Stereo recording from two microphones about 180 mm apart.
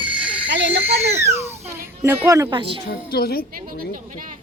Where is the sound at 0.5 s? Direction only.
75° right (ahead or behind).